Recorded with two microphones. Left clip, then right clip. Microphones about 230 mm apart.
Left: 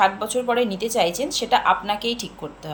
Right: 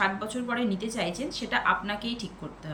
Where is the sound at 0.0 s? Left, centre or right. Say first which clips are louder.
Left 9 dB; centre.